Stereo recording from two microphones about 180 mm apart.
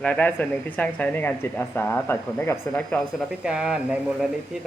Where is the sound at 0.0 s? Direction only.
10° left (ahead or behind).